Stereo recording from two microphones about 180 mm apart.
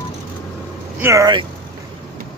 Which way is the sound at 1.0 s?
15° right (ahead or behind).